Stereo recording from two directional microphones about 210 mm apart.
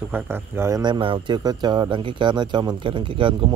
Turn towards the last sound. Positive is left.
turn(degrees=-25)  # may be behind; listen again after turning